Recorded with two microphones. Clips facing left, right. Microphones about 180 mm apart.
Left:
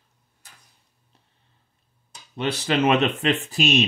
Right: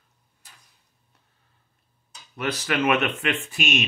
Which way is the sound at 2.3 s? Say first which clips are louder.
Left 3 dB; 25° left (ahead or behind).